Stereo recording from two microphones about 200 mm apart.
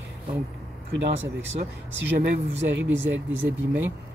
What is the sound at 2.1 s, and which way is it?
Speech, 55° right (ahead or behind).